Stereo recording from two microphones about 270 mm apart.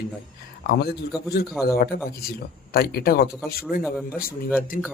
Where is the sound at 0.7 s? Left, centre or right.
Left.